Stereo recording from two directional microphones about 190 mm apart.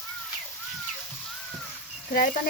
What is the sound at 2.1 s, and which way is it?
Speech, 45° left (ahead or behind).